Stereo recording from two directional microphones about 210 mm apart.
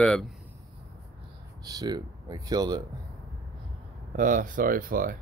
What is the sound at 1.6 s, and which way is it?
Speech, 20° right (ahead or behind).